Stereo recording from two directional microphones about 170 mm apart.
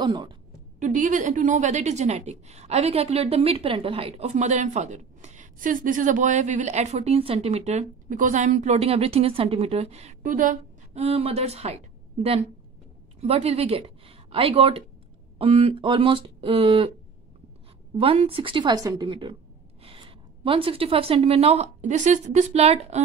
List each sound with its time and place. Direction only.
0.0 s a woman's voice: 25° right (ahead or behind)
0.7 s a woman's voice: 50° right (ahead or behind)
11.0 s a woman's voice: 35° right (ahead or behind)
17.9 s a woman's voice: 35° right (ahead or behind)